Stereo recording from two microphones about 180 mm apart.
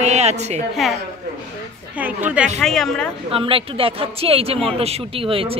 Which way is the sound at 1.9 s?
10° right (ahead or behind).